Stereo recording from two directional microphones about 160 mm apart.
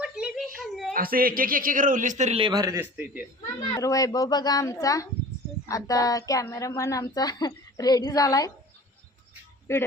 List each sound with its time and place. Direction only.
0.0 s a sound: 5° right (ahead or behind)
0.9 s speech: 65° right (ahead or behind); by 2.4 s 45° right (ahead or behind)
2.4 s speech: 25° right (ahead or behind)
3.4 s a woman's voice: 20° left (ahead or behind)